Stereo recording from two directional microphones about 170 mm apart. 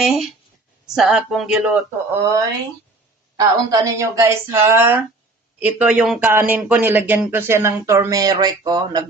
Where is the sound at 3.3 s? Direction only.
20° right (ahead or behind).